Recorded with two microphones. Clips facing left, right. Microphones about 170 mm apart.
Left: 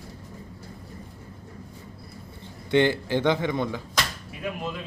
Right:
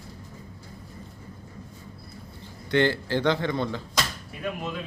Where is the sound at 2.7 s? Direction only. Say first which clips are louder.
Left 2 dB; 20° left (ahead or behind).